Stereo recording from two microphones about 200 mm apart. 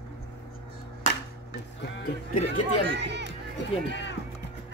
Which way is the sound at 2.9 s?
60° right (ahead or behind).